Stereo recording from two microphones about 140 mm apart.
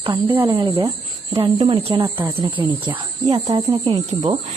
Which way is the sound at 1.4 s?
45° right (ahead or behind).